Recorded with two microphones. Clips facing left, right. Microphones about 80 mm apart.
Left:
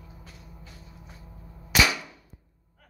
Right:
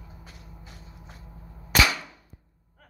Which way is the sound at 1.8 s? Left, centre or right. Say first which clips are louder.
Right 1 dB; centre.